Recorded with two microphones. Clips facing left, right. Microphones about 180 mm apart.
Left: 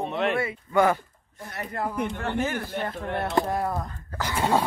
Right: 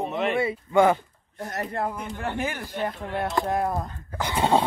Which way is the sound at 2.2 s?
15° right (ahead or behind).